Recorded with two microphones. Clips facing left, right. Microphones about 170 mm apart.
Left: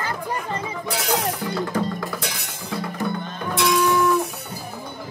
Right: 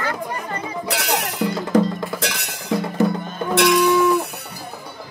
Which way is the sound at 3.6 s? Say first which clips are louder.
Right 4 dB; 70° right (ahead or behind).